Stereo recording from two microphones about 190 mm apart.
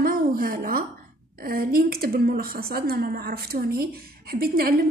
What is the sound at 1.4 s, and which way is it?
A woman's voice, 50° right (ahead or behind).